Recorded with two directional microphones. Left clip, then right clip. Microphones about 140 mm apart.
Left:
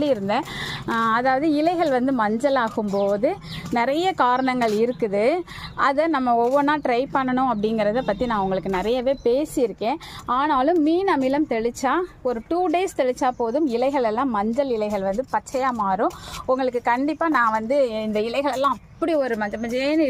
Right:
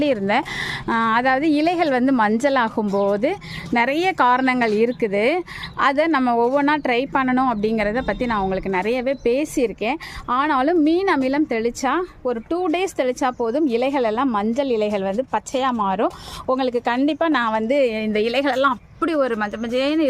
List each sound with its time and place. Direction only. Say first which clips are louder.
0.0 s a woman's voice: right 2 dB; 35° right (ahead or behind)